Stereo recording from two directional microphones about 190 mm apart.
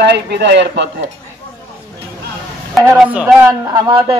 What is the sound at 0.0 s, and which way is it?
Speech, 65° right (ahead or behind).